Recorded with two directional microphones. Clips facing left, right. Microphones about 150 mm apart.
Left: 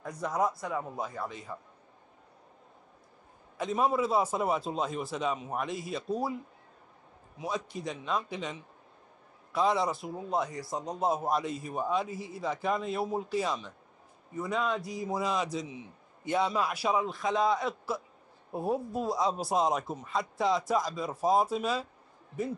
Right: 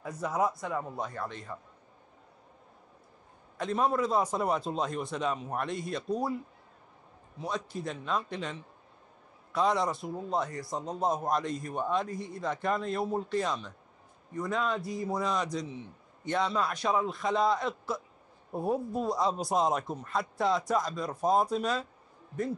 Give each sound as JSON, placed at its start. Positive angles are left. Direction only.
{"t": 0.0, "sound": "a man's voice", "side_deg": -5}
{"t": 3.5, "sound": "a man's voice", "side_deg": 5}